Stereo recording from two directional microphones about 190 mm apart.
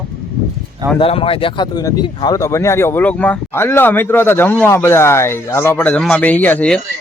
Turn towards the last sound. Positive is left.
turn(degrees=5)  # may be behind; listen again after turning